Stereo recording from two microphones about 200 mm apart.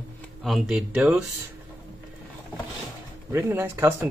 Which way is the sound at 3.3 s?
15° right (ahead or behind).